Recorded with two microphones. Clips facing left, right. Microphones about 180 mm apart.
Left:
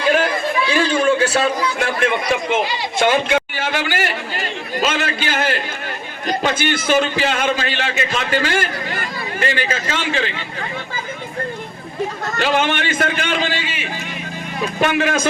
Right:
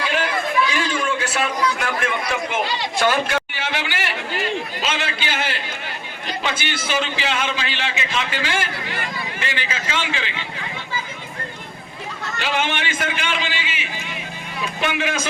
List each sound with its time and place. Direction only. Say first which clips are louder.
0.1 s chatter: left 8 dB; 35° left (ahead or behind)
2.6 s speech: left 3 dB; 20° left (ahead or behind)
3.6 s a man's voice: left 5 dB; 45° left (ahead or behind)
12.2 s a man's voice: left 4 dB; 40° left (ahead or behind)